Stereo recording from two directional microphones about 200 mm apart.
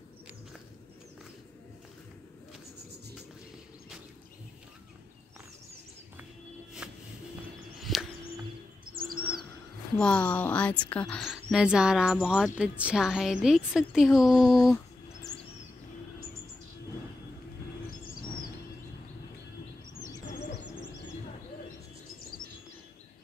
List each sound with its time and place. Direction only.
6.8 s music: 5° right (ahead or behind)
7.8 s a sound: centre (ahead or behind)
8.9 s bird: 45° right (ahead or behind)
9.9 s a woman's voice: 5° left (ahead or behind)
17.8 s bird: 45° left (ahead or behind)